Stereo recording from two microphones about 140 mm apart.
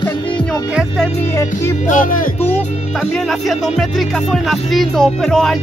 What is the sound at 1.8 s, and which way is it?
Music, 75° left (ahead or behind).